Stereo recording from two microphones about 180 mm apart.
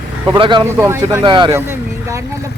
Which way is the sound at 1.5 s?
15° right (ahead or behind).